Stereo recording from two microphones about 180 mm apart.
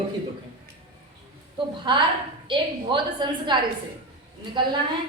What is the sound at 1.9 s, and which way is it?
A woman's voice, 25° right (ahead or behind).